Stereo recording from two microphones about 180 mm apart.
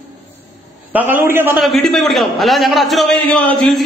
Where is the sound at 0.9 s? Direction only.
10° right (ahead or behind).